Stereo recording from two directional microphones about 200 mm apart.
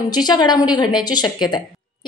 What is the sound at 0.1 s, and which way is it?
A woman's voice, 20° left (ahead or behind).